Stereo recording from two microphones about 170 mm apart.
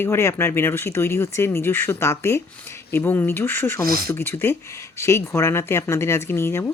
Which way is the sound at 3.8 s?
60° right (ahead or behind).